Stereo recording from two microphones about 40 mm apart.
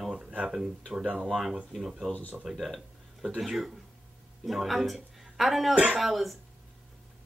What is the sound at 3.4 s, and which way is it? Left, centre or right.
A woman's voice, centre.